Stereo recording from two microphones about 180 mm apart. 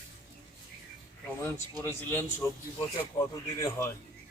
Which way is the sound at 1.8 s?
10° left (ahead or behind).